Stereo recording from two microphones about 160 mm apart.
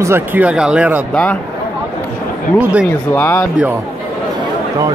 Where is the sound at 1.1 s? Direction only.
10° left (ahead or behind).